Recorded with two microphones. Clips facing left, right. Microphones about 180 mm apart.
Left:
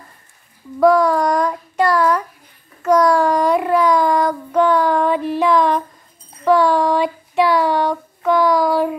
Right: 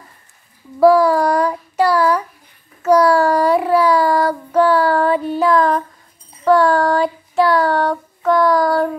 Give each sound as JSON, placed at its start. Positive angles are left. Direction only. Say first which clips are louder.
{"t": 0.7, "sound": "child singing", "louder": "right 2 dB", "side_deg": -5}